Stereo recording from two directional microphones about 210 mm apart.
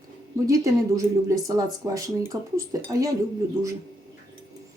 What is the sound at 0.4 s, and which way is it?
Speech, 15° right (ahead or behind).